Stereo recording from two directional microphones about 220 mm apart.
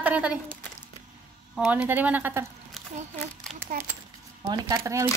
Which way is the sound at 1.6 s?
5° right (ahead or behind).